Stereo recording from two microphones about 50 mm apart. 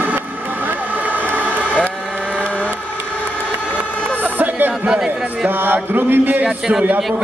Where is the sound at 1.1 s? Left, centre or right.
Right.